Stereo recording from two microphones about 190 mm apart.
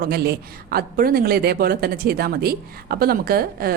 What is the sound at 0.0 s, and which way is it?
A woman's voice, 55° right (ahead or behind).